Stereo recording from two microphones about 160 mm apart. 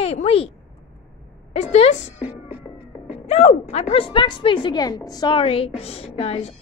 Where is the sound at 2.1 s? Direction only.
10° right (ahead or behind).